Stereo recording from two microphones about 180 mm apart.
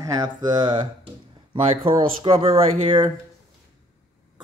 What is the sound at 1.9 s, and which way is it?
Speech, 30° right (ahead or behind).